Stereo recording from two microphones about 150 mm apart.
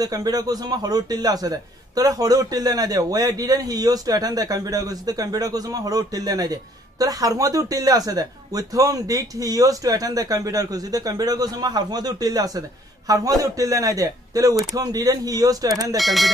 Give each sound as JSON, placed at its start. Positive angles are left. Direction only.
{"t": 0.0, "sound": "a man's voice", "side_deg": -25}
{"t": 16.0, "sound": "speech", "side_deg": 0}